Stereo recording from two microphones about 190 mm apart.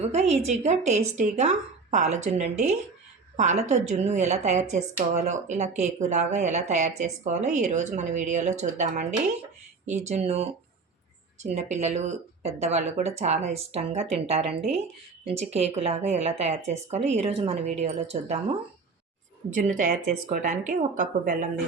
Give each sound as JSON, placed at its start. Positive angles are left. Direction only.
{"t": 0.0, "sound": "a woman's voice", "side_deg": -35}
{"t": 19.5, "sound": "a woman's voice", "side_deg": -40}